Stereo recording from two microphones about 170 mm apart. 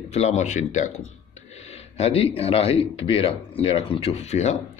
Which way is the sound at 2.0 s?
35° left (ahead or behind).